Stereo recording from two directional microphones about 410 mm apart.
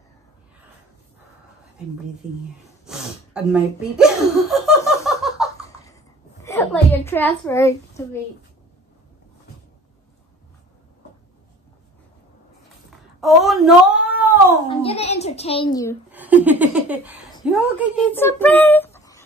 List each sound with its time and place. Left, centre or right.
2.9 s laughter: centre
6.4 s a sound: centre
13.2 s cat: centre
14.8 s a child's voice: centre
16.1 s speech: centre